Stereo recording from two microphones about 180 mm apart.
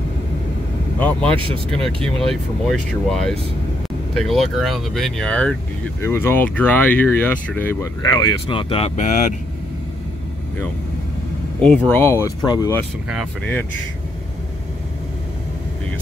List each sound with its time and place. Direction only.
0.9 s speech: 10° left (ahead or behind); by 9.3 s 40° left (ahead or behind)
11.6 s speech: 5° left (ahead or behind)
12.0 s speech: 15° left (ahead or behind)